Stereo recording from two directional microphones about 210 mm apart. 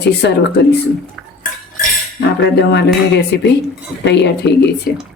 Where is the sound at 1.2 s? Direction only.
Centre (ahead or behind).